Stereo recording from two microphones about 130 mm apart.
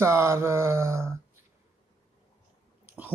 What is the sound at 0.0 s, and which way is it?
Speech, 20° right (ahead or behind).